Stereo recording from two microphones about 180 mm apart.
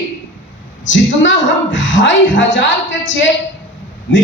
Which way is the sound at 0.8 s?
90° left.